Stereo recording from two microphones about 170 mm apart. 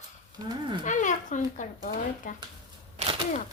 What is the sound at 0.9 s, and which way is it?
A child's voice, 45° left (ahead or behind).